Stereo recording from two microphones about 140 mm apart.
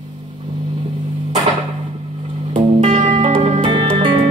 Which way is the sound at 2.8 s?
55° right (ahead or behind).